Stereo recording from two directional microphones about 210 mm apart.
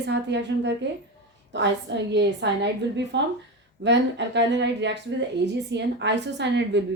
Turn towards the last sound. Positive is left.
turn(degrees=-55)  # may be behind; listen again after turning